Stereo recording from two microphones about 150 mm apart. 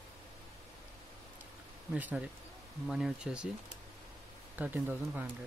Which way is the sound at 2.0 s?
10° right (ahead or behind).